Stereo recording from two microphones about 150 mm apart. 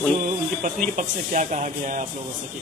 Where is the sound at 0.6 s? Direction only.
60° right (ahead or behind).